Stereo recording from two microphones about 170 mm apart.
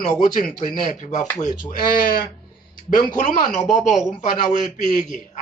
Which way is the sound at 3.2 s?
50° left (ahead or behind).